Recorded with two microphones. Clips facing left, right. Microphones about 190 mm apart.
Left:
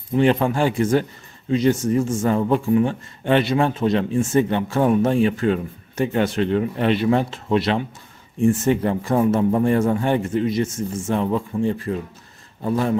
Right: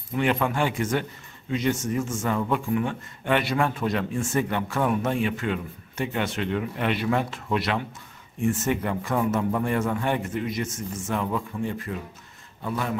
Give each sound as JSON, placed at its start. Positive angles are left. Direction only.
{"t": 0.1, "sound": "a man's voice", "side_deg": 30}